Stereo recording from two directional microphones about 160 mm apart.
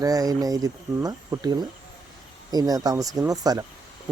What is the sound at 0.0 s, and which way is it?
Speech, 20° right (ahead or behind).